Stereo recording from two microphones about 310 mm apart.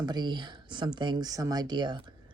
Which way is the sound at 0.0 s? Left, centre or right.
Centre.